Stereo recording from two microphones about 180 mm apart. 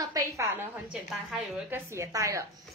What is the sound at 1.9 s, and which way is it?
Speech, 15° right (ahead or behind).